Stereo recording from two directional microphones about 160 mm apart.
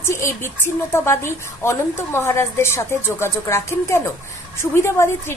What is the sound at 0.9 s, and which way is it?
Speech, 15° left (ahead or behind).